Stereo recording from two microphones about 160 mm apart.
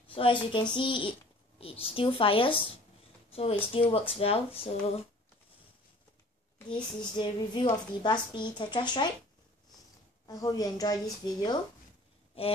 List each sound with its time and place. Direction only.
0.1 s speech: 35° left (ahead or behind)
6.7 s a woman's voice: 30° left (ahead or behind)
10.2 s a woman's voice: 25° left (ahead or behind)